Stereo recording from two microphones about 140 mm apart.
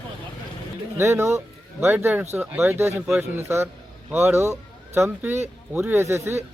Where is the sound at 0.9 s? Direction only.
20° right (ahead or behind).